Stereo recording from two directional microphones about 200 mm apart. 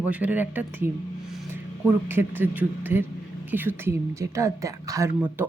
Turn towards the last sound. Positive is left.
turn(degrees=-10)  # may be behind; listen again after turning